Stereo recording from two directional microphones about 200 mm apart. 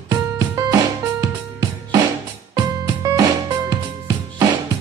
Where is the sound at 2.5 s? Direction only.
15° right (ahead or behind).